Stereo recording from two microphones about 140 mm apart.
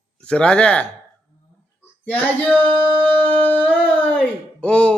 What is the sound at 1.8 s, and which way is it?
Child singing, 10° left (ahead or behind).